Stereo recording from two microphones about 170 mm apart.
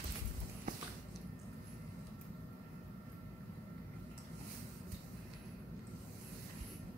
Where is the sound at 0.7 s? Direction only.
50° right (ahead or behind).